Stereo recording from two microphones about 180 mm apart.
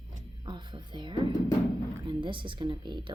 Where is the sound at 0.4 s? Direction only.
25° right (ahead or behind).